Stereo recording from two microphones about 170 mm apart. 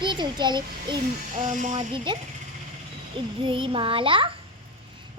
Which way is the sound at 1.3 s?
45° right (ahead or behind).